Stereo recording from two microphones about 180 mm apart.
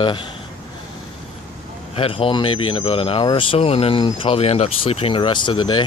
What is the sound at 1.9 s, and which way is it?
Speech, 30° left (ahead or behind).